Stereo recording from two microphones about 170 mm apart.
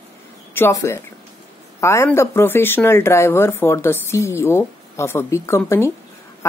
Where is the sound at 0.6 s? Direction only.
15° left (ahead or behind).